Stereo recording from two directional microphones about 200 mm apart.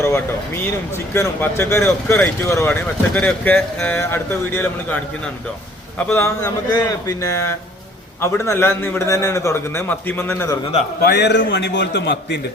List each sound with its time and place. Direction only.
1.1 s speech: 10° left (ahead or behind)
11.0 s a man's voice: 55° left (ahead or behind)